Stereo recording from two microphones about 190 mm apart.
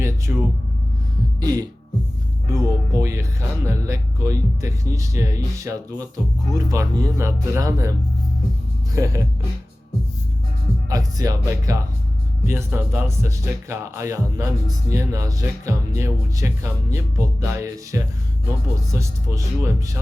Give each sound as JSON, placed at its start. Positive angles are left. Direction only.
{"t": 0.0, "sound": "music", "side_deg": -15}
{"t": 6.5, "sound": "speech", "side_deg": -15}
{"t": 9.0, "sound": "speech", "side_deg": -15}
{"t": 10.8, "sound": "speech", "side_deg": -20}